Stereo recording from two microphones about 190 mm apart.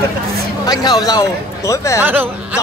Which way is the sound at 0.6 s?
20° left (ahead or behind).